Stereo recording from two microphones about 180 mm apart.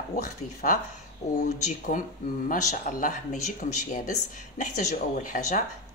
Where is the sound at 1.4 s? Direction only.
40° left (ahead or behind).